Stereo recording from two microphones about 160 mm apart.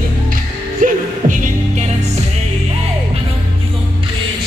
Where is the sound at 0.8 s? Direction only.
55° right (ahead or behind).